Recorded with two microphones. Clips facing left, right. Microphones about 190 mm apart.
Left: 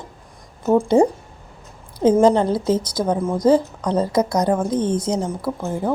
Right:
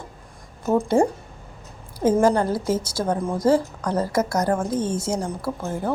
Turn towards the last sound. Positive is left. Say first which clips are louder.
# left 3 dB
turn(degrees=15)  # may be behind; listen again after turning